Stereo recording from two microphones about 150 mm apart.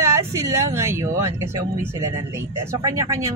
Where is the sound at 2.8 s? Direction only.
20° right (ahead or behind).